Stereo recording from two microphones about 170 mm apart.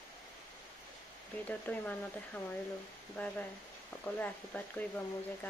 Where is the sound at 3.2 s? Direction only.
10° left (ahead or behind).